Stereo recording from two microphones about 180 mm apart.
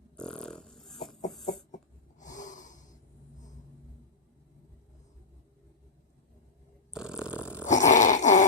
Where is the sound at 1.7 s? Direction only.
45° left (ahead or behind).